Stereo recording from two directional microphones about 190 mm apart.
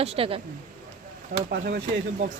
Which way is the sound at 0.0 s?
30° right (ahead or behind).